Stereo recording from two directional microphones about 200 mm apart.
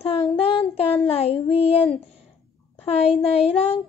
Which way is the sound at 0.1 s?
30° left (ahead or behind).